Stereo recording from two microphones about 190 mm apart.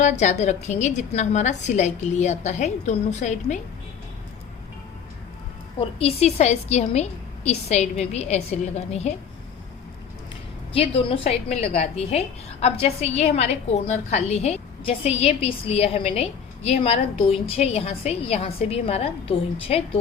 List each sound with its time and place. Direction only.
0.0 s a woman's voice: 40° left (ahead or behind)
5.8 s a woman's voice: 30° left (ahead or behind)
10.7 s a woman's voice: 30° left (ahead or behind)